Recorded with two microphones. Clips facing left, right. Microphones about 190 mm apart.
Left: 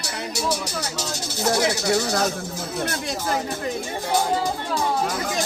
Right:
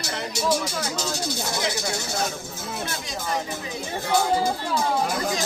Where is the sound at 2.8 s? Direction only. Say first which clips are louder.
Left 5 dB; 65° left (ahead or behind).